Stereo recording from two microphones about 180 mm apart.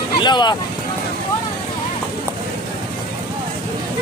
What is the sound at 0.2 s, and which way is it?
Speech, 25° left (ahead or behind).